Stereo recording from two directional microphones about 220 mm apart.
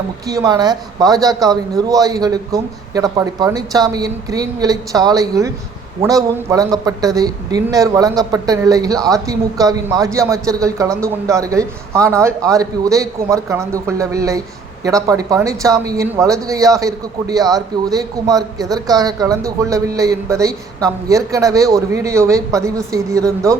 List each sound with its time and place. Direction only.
0.3 s a man's voice: 15° right (ahead or behind)